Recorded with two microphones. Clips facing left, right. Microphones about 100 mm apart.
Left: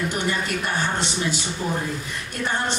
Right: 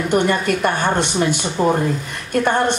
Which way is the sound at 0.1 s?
55° right (ahead or behind).